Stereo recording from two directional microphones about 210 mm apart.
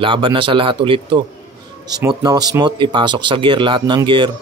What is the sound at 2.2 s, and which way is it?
A man's voice, 20° right (ahead or behind).